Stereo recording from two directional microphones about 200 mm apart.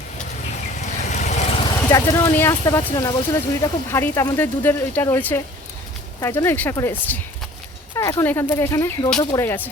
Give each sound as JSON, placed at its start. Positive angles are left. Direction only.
{"t": 0.8, "sound": "vehicle", "side_deg": 35}
{"t": 1.9, "sound": "speech", "side_deg": 15}